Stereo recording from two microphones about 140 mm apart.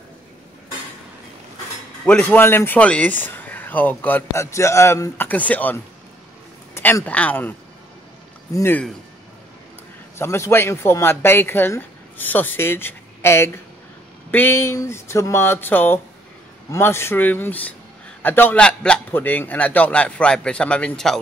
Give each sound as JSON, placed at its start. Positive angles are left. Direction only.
{"t": 2.0, "sound": "a man's voice", "side_deg": 10}
{"t": 8.5, "sound": "a man's voice", "side_deg": 15}
{"t": 10.1, "sound": "a man's voice", "side_deg": 20}